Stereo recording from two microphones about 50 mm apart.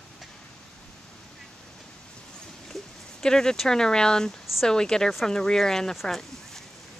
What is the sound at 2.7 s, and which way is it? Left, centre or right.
Speech, centre.